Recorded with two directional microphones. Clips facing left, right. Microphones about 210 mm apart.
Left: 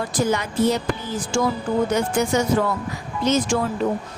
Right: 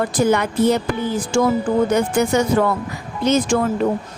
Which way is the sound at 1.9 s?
55° right (ahead or behind).